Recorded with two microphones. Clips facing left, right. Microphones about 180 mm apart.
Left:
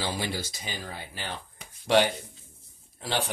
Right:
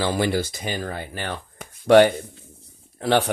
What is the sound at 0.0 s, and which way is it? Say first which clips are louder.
Speech: right 10 dB; 55° right (ahead or behind).